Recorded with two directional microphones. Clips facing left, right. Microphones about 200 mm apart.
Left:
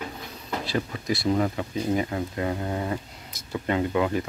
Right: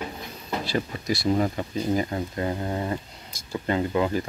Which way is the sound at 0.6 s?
Centre (ahead or behind).